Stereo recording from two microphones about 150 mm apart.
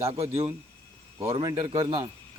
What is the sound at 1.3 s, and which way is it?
Speech, 25° right (ahead or behind).